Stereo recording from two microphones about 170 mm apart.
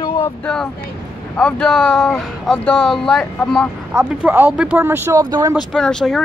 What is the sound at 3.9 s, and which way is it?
Speech, 10° right (ahead or behind).